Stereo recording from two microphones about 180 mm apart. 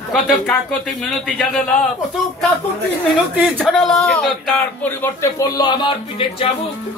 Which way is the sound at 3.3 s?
Centre (ahead or behind).